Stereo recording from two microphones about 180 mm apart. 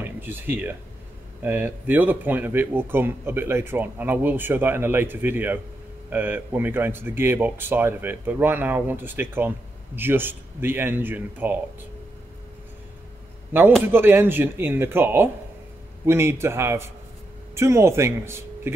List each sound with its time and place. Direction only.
0.0 s a man's voice: 10° right (ahead or behind)
13.5 s a man's voice: 10° right (ahead or behind)